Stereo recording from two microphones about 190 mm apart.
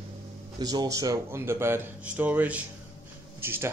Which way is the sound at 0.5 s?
20° right (ahead or behind).